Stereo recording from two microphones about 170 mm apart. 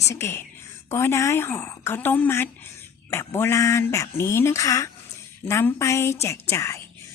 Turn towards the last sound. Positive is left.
turn(degrees=15)  # may be behind; listen again after turning